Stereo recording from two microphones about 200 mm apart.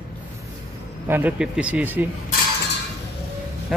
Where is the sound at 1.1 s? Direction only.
10° right (ahead or behind).